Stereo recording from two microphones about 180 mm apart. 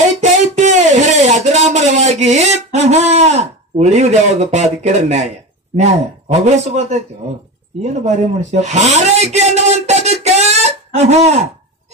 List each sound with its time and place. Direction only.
0.0 s a sound: 40° right (ahead or behind)
5.8 s speech: 40° right (ahead or behind)
8.0 s a man's voice: 40° right (ahead or behind)